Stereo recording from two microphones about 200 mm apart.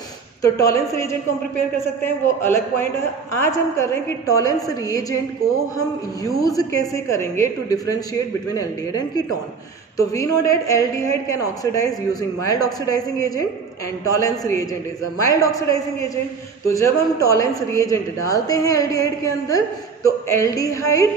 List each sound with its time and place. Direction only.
0.4 s a woman's voice: 15° left (ahead or behind)
2.0 s a woman's voice: 10° left (ahead or behind)
6.4 s a woman's voice: 15° left (ahead or behind)